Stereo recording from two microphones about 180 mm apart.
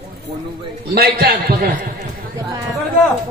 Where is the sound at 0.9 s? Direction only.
60° right (ahead or behind).